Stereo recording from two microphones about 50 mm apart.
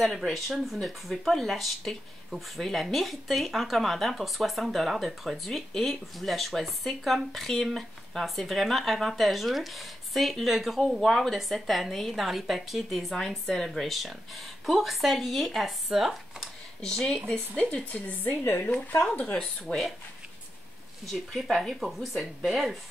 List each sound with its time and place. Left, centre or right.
0.0 s speech: centre
17.3 s speech: left
18.4 s speech: left
19.1 s speech: left
21.0 s speech: centre